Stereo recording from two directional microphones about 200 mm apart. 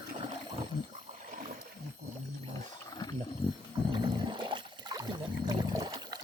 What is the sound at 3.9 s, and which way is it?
Boat, 25° right (ahead or behind).